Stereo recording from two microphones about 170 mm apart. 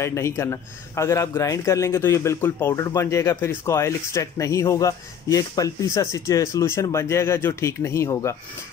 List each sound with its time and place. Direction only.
0.0 s a man's voice: 15° left (ahead or behind)